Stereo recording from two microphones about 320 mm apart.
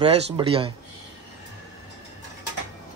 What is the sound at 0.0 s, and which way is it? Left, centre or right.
Speech, centre.